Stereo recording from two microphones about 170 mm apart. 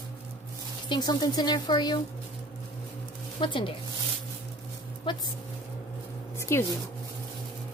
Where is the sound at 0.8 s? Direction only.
25° left (ahead or behind).